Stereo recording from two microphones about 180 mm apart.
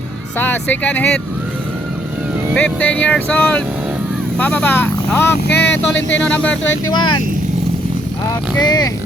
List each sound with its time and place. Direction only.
0.3 s speech: 10° left (ahead or behind)
2.6 s speech: 5° left (ahead or behind)
5.5 s speech: 70° left (ahead or behind)
6.2 s speech: 5° left (ahead or behind)
6.9 s speech: 25° left (ahead or behind)
8.5 s speech: 20° left (ahead or behind)